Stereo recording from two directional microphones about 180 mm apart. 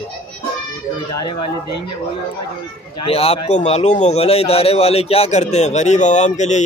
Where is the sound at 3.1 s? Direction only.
35° left (ahead or behind).